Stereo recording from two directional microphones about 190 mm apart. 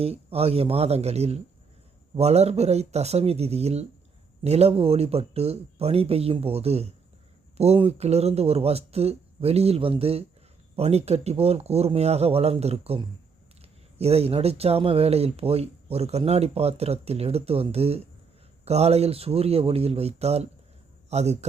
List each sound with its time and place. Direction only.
0.0 s a man's voice: 30° right (ahead or behind)